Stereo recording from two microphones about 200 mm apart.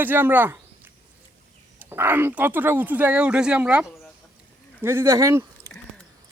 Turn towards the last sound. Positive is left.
turn(degrees=-15)  # may be behind; listen again after turning